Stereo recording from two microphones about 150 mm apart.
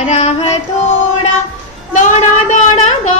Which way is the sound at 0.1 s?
50° left (ahead or behind).